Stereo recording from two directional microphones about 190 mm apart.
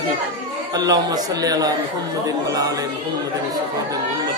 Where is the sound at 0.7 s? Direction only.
20° right (ahead or behind).